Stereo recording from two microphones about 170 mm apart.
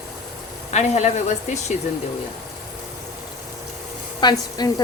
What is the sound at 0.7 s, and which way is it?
Speech, 40° left (ahead or behind).